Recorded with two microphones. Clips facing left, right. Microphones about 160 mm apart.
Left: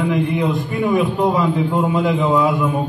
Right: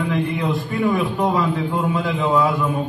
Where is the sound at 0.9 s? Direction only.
20° left (ahead or behind).